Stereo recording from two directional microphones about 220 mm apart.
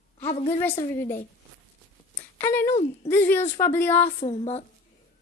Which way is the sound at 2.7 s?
30° left (ahead or behind).